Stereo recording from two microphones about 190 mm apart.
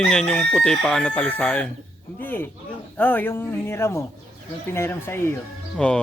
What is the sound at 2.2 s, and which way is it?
Speech, 10° left (ahead or behind).